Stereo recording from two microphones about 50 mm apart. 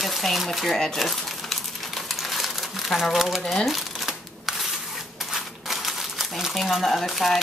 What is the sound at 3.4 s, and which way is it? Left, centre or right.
Shuffling cards, centre.